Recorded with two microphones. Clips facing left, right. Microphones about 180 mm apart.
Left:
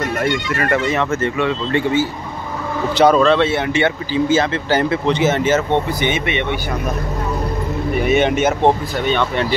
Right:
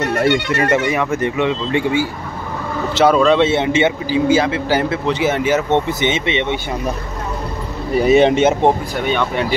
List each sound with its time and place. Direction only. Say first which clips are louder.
0.6 s a man's voice: right 1 dB; 15° right (ahead or behind)
3.0 s speech: left 1 dB; centre (ahead or behind)
3.3 s a man's voice: right 2 dB; 20° right (ahead or behind)
5.9 s speech: right 1 dB; 25° right (ahead or behind)
7.9 s speech: right 5 dB; 35° right (ahead or behind)
8.6 s a man's voice: even; 10° right (ahead or behind)